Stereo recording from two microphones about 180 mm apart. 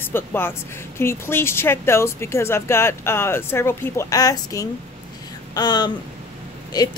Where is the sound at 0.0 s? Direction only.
10° left (ahead or behind).